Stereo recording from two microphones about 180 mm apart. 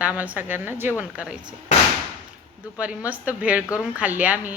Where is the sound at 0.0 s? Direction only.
10° right (ahead or behind).